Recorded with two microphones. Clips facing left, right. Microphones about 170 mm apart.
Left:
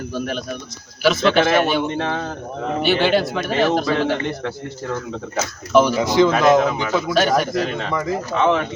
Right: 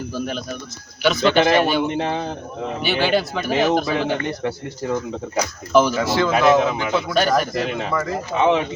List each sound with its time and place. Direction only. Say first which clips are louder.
0.1 s speech: left 1 dB; centre (ahead or behind)
2.0 s speech: right 1 dB; 15° right (ahead or behind)
2.8 s speech: left 2 dB; centre (ahead or behind)
5.4 s speech: left 1 dB; centre (ahead or behind)
6.0 s speech: left 3 dB; 20° left (ahead or behind)
7.1 s speech: left 2 dB; centre (ahead or behind)